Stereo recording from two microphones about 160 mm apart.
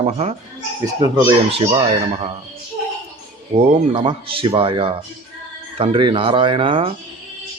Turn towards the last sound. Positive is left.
turn(degrees=-35)  # may be behind; listen again after turning